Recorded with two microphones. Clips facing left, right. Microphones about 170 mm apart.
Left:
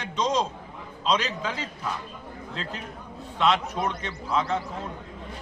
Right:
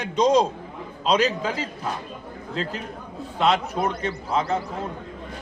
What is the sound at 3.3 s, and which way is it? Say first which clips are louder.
A man's voice: right 2 dB; 35° right (ahead or behind).